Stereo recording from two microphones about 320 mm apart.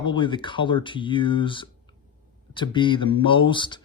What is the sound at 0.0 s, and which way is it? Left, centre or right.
Speech, centre.